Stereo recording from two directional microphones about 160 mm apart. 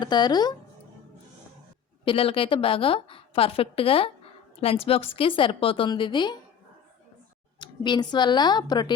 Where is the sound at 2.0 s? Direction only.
35° left (ahead or behind).